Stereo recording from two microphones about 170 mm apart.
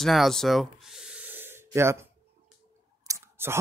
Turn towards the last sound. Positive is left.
turn(degrees=-15)  # may be behind; listen again after turning